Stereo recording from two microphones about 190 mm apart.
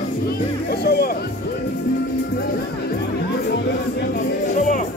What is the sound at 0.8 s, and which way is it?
Music, 55° left (ahead or behind).